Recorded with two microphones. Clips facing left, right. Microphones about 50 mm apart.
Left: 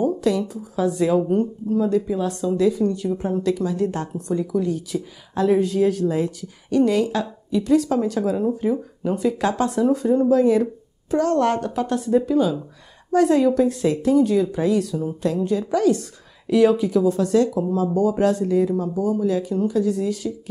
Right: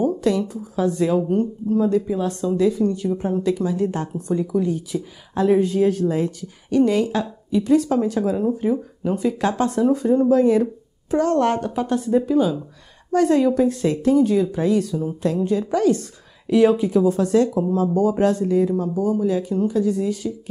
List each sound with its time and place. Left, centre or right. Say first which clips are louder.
0.0 s a woman's voice: right 1 dB; centre